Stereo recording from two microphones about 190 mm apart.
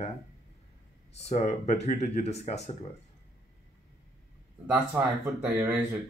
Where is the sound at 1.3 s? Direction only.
35° left (ahead or behind).